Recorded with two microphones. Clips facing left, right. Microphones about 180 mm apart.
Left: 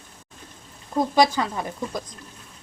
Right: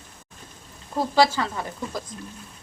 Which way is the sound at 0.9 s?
15° left (ahead or behind).